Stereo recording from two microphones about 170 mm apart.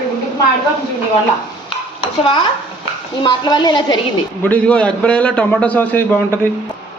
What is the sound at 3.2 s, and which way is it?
Speech, 25° left (ahead or behind).